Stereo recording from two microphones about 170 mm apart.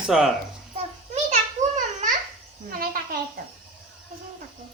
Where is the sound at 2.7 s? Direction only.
55° right (ahead or behind).